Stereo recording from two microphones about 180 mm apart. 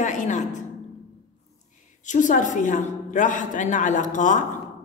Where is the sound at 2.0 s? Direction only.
45° left (ahead or behind).